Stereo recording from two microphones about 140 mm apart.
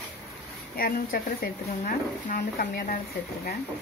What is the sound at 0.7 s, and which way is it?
A woman's voice, 90° left.